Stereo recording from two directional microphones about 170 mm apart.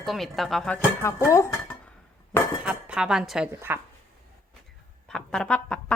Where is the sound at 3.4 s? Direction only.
15° right (ahead or behind).